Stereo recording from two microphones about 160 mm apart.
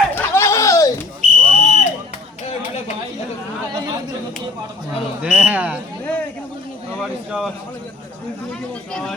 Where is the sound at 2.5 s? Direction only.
40° left (ahead or behind).